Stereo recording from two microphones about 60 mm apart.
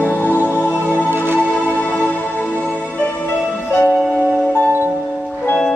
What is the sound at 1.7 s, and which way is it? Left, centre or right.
Music, left.